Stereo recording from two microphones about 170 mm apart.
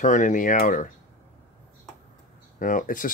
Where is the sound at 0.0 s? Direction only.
50° left (ahead or behind).